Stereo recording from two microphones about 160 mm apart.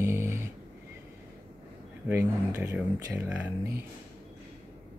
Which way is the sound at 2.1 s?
15° right (ahead or behind).